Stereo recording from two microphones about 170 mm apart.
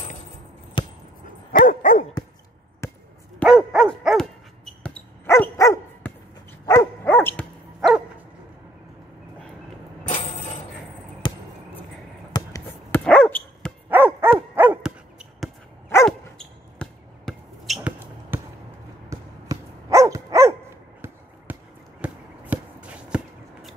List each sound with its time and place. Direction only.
0.8 s chop: 30° left (ahead or behind)
1.5 s dog: 55° left (ahead or behind)
2.8 s basketball bounce: 15° left (ahead or behind)
3.4 s dog: 5° right (ahead or behind)
5.2 s dog: 15° left (ahead or behind)
10.0 s a sound: 45° left (ahead or behind)
11.2 s basketball bounce: 25° left (ahead or behind)
12.6 s dog: 10° left (ahead or behind)
13.8 s dog: 10° right (ahead or behind)
16.1 s basketball bounce: 5° left (ahead or behind)
19.0 s dog: 20° right (ahead or behind)
21.5 s basketball bounce: 10° right (ahead or behind)
22.0 s a sound: 10° right (ahead or behind)